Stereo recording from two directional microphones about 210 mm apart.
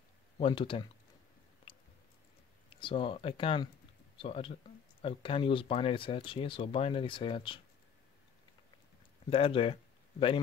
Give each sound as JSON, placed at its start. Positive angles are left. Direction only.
{"t": 0.4, "sound": "speech", "side_deg": 25}
{"t": 1.7, "sound": "chewing", "side_deg": 25}
{"t": 2.7, "sound": "speech", "side_deg": 25}
{"t": 9.3, "sound": "speech", "side_deg": 25}